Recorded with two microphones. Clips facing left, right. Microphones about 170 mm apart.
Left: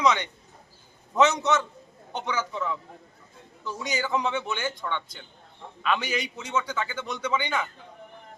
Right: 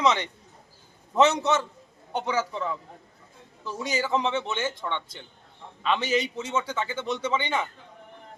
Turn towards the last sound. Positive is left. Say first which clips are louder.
# right 1 dB
turn(degrees=-25)  # may be behind; listen again after turning